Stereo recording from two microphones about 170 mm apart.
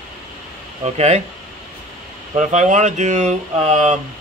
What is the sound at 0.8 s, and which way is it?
Speech, 40° right (ahead or behind).